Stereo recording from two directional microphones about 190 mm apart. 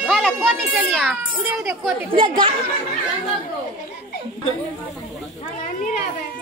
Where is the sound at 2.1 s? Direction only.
25° right (ahead or behind).